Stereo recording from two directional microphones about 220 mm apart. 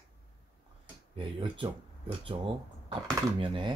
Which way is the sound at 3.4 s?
25° right (ahead or behind).